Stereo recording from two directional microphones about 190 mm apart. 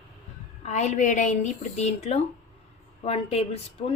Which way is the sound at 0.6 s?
35° left (ahead or behind).